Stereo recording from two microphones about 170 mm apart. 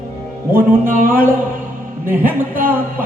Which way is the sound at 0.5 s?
55° right (ahead or behind).